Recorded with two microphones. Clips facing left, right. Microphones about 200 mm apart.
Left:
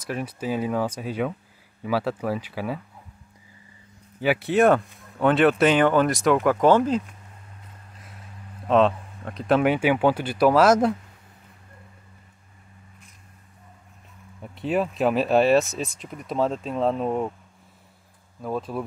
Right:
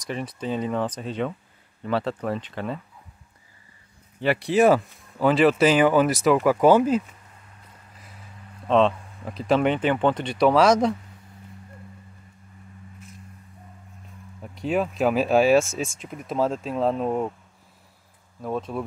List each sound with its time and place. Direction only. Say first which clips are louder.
0.0 s speech: left 1 dB; 5° left (ahead or behind)
4.2 s speech: even; centre (ahead or behind)
8.0 s speech: left 1 dB; centre (ahead or behind)
14.4 s speech: even; centre (ahead or behind)
18.4 s speech: even; centre (ahead or behind)